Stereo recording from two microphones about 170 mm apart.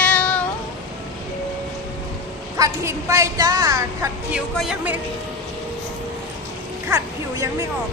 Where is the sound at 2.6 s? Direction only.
20° right (ahead or behind).